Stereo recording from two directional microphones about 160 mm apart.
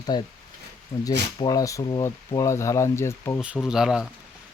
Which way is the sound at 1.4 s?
25° left (ahead or behind).